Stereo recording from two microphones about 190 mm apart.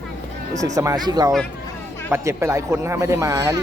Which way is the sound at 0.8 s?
20° right (ahead or behind).